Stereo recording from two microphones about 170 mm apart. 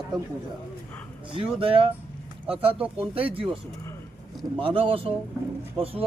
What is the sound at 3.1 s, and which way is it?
Speech, 35° right (ahead or behind).